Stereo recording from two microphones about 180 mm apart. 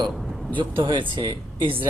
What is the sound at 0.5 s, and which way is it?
Speech, 25° right (ahead or behind).